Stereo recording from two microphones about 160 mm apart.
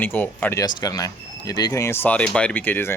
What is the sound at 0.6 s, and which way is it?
Speech, 25° left (ahead or behind).